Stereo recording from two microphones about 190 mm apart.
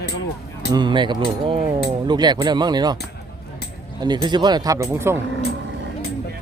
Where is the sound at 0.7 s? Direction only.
25° right (ahead or behind).